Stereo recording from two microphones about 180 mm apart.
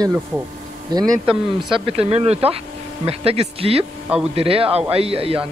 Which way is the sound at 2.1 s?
35° right (ahead or behind).